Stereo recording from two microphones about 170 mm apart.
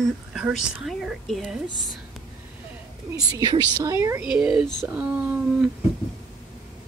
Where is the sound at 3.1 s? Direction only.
20° right (ahead or behind).